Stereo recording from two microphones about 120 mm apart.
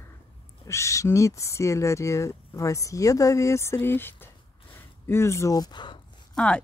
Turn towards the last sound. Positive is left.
turn(degrees=10)  # may be behind; listen again after turning